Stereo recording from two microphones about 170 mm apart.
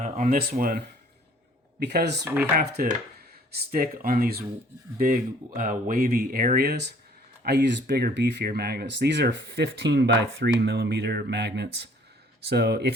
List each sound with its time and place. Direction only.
0.0 s speech: 45° right (ahead or behind)
1.8 s speech: 75° right (ahead or behind)
2.2 s speech: 10° right (ahead or behind)
2.6 s speech: 55° right (ahead or behind); by 6.9 s 70° right (ahead or behind)
7.4 s speech: 85° right